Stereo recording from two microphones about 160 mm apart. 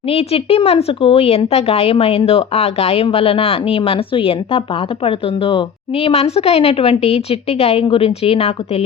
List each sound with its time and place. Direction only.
0.1 s speech: 40° left (ahead or behind)